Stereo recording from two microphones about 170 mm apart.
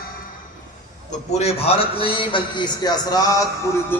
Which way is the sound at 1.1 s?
40° left (ahead or behind).